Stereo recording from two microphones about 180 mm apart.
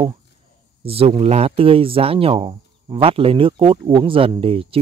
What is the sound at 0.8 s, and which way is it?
Speech, 30° right (ahead or behind).